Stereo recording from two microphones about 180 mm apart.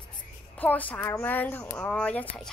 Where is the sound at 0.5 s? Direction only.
10° left (ahead or behind).